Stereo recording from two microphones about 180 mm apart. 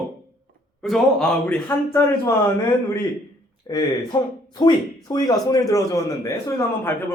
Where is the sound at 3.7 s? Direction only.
20° left (ahead or behind).